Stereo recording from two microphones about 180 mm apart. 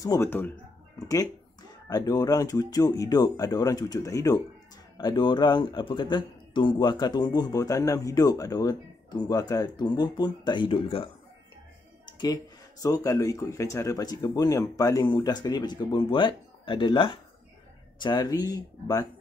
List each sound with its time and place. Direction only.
0.0 s speech: 15° left (ahead or behind)
12.1 s a sound: 25° left (ahead or behind)
12.8 s speech: 15° left (ahead or behind)